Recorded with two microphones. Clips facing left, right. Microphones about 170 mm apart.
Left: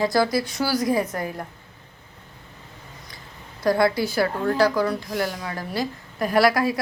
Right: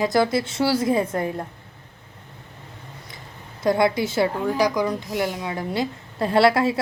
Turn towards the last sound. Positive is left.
turn(degrees=-25)  # may be behind; listen again after turning